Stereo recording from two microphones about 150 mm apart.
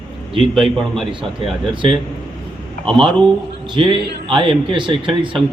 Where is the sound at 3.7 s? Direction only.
35° right (ahead or behind).